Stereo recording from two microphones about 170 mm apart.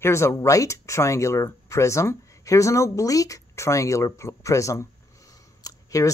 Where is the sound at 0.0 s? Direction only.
15° left (ahead or behind).